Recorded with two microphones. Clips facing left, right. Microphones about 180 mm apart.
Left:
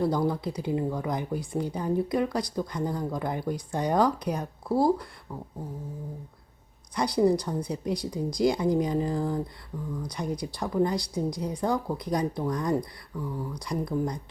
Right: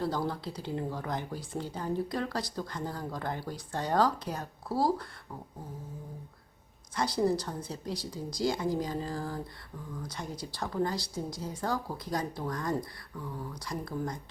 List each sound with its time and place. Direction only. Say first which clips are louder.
0.0 s speech: left 6 dB; 15° left (ahead or behind)
6.9 s speech: left 5 dB; 15° left (ahead or behind)